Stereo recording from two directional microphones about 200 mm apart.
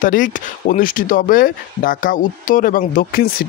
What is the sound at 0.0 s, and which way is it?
Speech, 40° left (ahead or behind).